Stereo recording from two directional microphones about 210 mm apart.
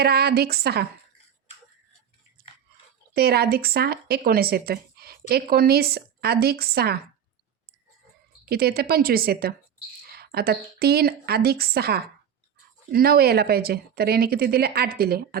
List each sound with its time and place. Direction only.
0.0 s speech: 50° right (ahead or behind)
3.2 s speech: 50° right (ahead or behind)
8.4 s a woman's voice: 45° right (ahead or behind)